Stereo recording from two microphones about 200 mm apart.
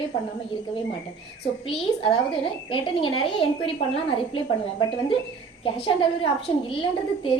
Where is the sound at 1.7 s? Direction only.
25° left (ahead or behind).